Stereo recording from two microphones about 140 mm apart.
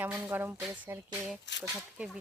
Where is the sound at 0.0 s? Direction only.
10° right (ahead or behind).